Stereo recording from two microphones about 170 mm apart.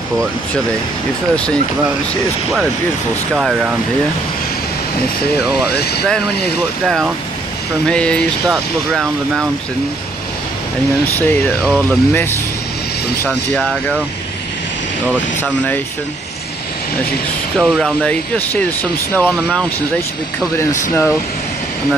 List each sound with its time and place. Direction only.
1.3 s speech: 5° left (ahead or behind)
3.3 s speech: 5° right (ahead or behind)
5.7 s speech: 70° left (ahead or behind)
7.8 s speech: 5° left (ahead or behind)
11.1 s speech: 10° left (ahead or behind)
13.3 s speech: 5° left (ahead or behind)
15.4 s speech: 10° left (ahead or behind)
17.6 s speech: centre (ahead or behind)
19.1 s speech: 10° left (ahead or behind)
20.9 s speech: 15° left (ahead or behind)